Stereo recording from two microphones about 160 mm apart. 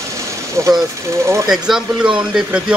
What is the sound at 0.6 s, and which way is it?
Speech, 20° right (ahead or behind).